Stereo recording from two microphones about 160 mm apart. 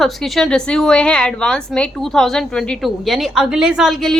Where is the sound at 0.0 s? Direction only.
Centre (ahead or behind).